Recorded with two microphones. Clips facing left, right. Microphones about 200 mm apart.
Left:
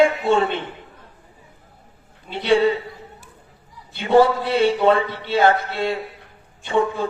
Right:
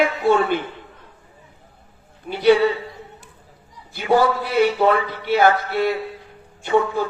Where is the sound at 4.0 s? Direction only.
25° left (ahead or behind).